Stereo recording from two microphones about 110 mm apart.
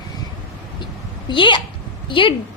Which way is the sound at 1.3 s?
50° left (ahead or behind).